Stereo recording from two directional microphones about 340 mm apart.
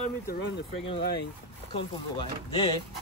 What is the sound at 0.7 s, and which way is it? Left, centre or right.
Speech, centre.